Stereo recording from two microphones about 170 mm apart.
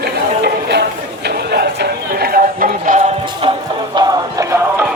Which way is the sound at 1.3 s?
70° right (ahead or behind).